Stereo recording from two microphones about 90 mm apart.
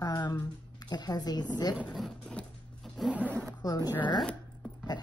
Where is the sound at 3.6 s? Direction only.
45° left (ahead or behind).